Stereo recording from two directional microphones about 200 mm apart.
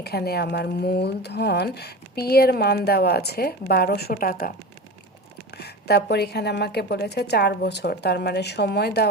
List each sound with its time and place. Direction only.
0.0 s a woman's voice: 55° left (ahead or behind)